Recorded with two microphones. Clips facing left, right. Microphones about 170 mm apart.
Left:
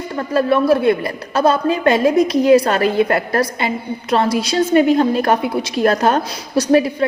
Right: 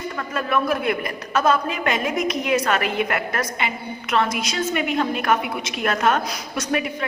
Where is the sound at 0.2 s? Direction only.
35° left (ahead or behind).